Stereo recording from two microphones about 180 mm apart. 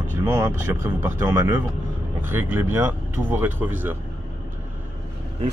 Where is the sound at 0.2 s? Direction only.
15° right (ahead or behind).